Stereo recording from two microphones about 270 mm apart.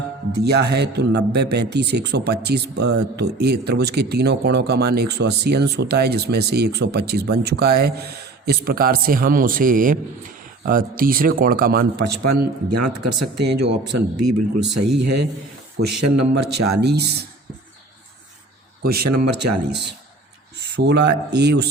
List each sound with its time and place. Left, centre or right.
0.3 s speech: right
12.0 s a man's voice: right
12.7 s speech: right
13.3 s speech: right
13.8 s a man's voice: right
16.8 s speech: right
18.8 s a man's voice: right
19.2 s a man's voice: right
20.7 s speech: right